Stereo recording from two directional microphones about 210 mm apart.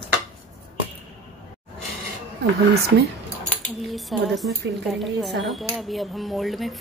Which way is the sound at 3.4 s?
Centre (ahead or behind).